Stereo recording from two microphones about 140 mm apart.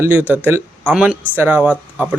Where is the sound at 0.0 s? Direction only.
15° right (ahead or behind).